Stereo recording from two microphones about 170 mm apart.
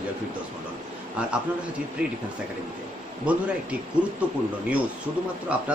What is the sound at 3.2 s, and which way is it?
Speech, 10° right (ahead or behind).